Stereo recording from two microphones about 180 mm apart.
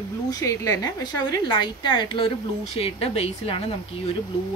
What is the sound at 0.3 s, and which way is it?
A woman's voice, 20° left (ahead or behind).